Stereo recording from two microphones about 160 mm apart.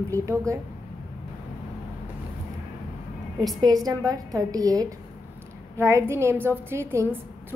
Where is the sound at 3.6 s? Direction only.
25° right (ahead or behind).